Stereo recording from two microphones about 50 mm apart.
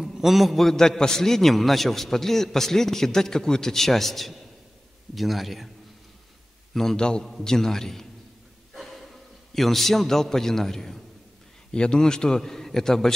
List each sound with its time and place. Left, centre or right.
0.0 s a man's voice: centre
6.7 s a man's voice: centre
7.0 s a man's voice: centre
7.2 s a man's voice: centre
11.7 s a man's voice: centre